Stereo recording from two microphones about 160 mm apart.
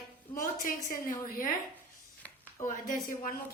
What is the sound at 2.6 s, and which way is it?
Speech, 60° left (ahead or behind).